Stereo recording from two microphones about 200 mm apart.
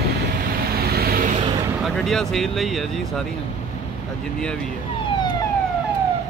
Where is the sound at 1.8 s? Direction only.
Centre (ahead or behind).